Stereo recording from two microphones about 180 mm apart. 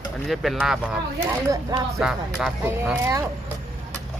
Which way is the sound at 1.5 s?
20° right (ahead or behind).